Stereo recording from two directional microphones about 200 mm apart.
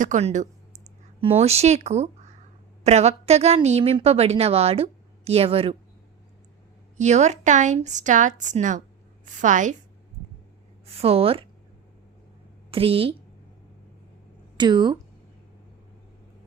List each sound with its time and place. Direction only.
0.0 s a woman's voice: 35° right (ahead or behind)
6.9 s a woman's voice: 35° right (ahead or behind)
10.9 s a woman's voice: 30° right (ahead or behind)
12.7 s a woman's voice: 30° right (ahead or behind)
14.5 s speech: 20° right (ahead or behind)